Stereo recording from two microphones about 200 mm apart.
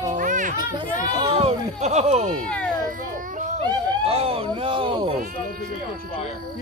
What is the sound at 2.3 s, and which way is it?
Speech, 5° left (ahead or behind).